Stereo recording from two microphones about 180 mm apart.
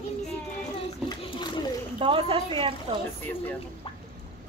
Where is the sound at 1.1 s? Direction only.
25° left (ahead or behind).